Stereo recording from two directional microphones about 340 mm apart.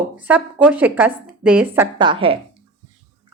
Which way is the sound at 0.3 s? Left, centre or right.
Centre.